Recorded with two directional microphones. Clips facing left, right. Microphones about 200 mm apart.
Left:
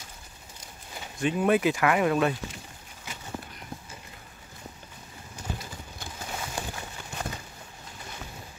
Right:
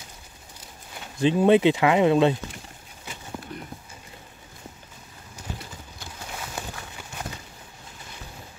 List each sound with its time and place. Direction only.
1.2 s speech: 25° right (ahead or behind)